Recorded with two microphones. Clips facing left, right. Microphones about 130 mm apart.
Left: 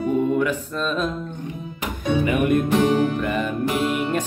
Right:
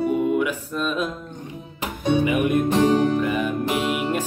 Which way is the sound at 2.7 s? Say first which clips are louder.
Even; 35° right (ahead or behind).